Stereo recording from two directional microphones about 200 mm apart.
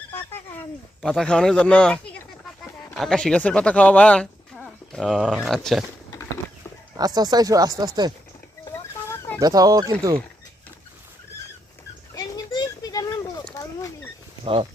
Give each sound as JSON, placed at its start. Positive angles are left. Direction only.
{"t": 1.0, "sound": "speech", "side_deg": 5}
{"t": 6.9, "sound": "speech", "side_deg": -20}
{"t": 8.7, "sound": "a sound", "side_deg": 15}
{"t": 9.4, "sound": "speech", "side_deg": -20}
{"t": 12.1, "sound": "a sound", "side_deg": 20}
{"t": 13.5, "sound": "wild animals", "side_deg": 15}
{"t": 14.4, "sound": "speech", "side_deg": -25}